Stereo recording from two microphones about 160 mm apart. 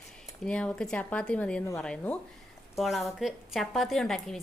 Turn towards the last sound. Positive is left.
turn(degrees=5)  # may be behind; listen again after turning